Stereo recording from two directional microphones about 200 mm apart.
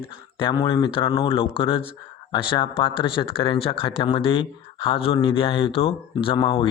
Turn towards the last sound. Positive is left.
turn(degrees=25)  # may be behind; listen again after turning